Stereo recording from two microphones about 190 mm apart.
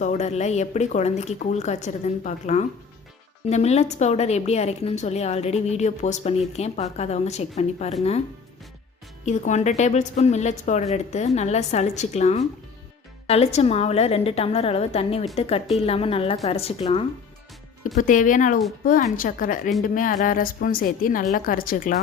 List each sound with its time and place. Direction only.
0.0 s a woman's voice: 40° left (ahead or behind)
9.2 s a woman's voice: 40° left (ahead or behind)
17.9 s a woman's voice: 45° left (ahead or behind)